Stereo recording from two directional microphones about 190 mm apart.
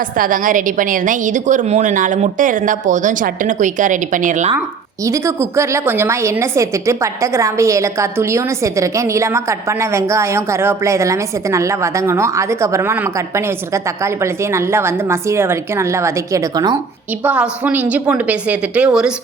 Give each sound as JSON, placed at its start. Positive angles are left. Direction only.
{"t": 0.2, "sound": "a woman's voice", "side_deg": -45}
{"t": 5.0, "sound": "a woman's voice", "side_deg": -15}
{"t": 17.2, "sound": "a woman's voice", "side_deg": -5}